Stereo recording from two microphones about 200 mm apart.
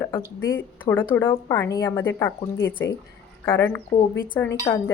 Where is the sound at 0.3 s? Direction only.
10° left (ahead or behind).